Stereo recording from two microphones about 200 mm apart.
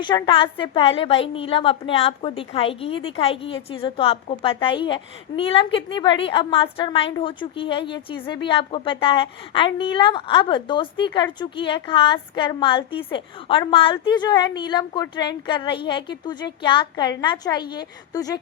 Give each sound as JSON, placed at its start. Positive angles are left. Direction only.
{"t": 0.0, "sound": "a woman's voice", "side_deg": 25}